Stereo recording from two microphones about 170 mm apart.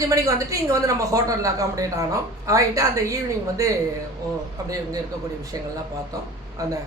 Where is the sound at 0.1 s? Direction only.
20° right (ahead or behind).